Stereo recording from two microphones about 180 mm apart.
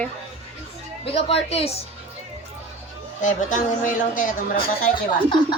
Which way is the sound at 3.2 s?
45° left (ahead or behind).